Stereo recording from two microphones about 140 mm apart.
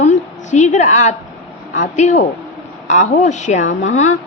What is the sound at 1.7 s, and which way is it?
A woman's voice, 60° left (ahead or behind).